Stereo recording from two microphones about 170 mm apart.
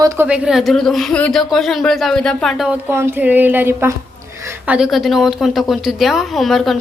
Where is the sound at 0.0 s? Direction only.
20° right (ahead or behind).